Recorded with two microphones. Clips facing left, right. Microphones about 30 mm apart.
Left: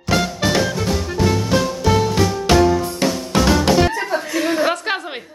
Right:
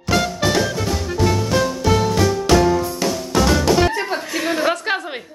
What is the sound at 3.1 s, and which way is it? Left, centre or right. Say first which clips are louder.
Drum kit: even; centre.